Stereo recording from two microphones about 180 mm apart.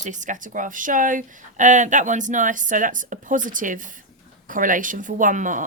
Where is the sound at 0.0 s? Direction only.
45° right (ahead or behind).